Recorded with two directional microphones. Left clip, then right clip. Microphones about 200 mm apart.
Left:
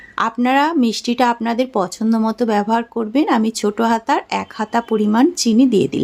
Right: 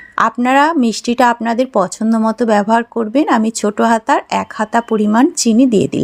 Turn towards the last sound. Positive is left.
turn(degrees=-20)  # may be behind; listen again after turning